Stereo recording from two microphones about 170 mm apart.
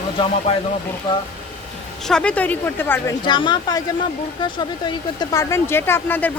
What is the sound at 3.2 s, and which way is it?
Speech, 25° left (ahead or behind).